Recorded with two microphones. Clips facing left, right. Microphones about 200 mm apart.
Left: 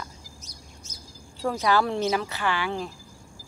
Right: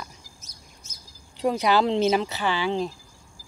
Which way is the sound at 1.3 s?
15° right (ahead or behind).